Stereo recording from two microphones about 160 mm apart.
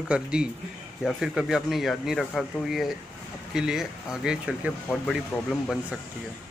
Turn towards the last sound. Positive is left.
turn(degrees=0)  # may be behind; listen again after turning